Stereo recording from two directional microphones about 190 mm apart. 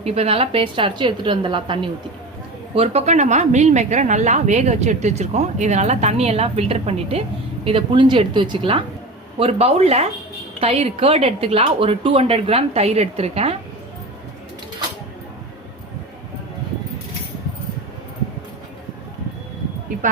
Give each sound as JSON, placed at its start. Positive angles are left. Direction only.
{"t": 0.0, "sound": "a woman's voice", "side_deg": -35}